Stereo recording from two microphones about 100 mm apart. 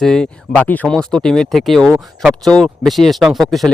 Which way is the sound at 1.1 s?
5° left (ahead or behind).